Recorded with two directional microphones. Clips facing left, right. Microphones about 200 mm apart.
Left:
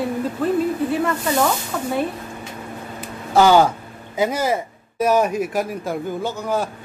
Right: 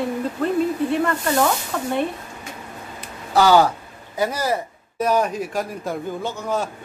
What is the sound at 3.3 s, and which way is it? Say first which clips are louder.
A man's voice: left 2 dB; 15° left (ahead or behind).